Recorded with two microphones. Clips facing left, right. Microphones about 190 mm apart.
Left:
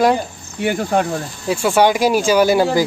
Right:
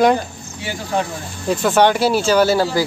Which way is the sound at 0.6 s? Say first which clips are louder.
Left 5 dB; 55° left (ahead or behind).